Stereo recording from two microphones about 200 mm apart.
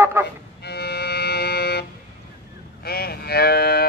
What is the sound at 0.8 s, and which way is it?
Music, 55° left (ahead or behind).